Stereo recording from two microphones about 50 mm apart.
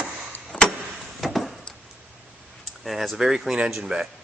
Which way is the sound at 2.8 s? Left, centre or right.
Centre.